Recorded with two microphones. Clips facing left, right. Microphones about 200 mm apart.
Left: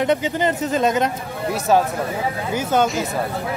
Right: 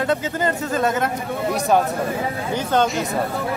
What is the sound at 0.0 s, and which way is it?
Speech, 20° left (ahead or behind).